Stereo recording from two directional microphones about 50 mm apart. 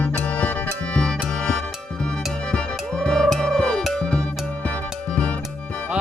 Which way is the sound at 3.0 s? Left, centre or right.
Centre.